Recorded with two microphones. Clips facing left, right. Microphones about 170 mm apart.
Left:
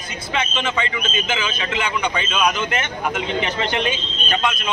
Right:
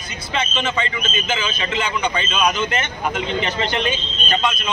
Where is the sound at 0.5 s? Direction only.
10° left (ahead or behind).